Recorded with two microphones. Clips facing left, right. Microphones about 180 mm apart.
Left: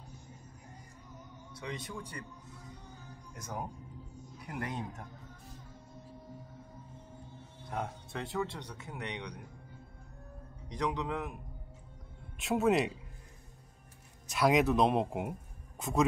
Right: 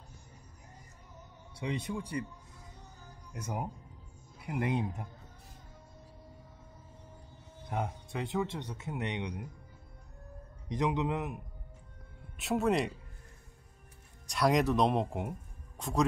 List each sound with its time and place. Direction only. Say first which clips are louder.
1.5 s speech: right 6 dB; 30° right (ahead or behind)
3.3 s speech: right 3 dB; 10° right (ahead or behind)
7.7 s speech: right 2 dB; 10° right (ahead or behind)
8.6 s speech: right 5 dB; 25° right (ahead or behind)
10.8 s speech: right 3 dB; 20° right (ahead or behind)
12.4 s speech: left 1 dB; centre (ahead or behind)
14.2 s speech: left 1 dB; centre (ahead or behind)